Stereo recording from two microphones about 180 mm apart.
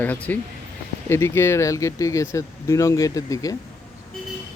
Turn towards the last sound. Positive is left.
turn(degrees=20)  # may be behind; listen again after turning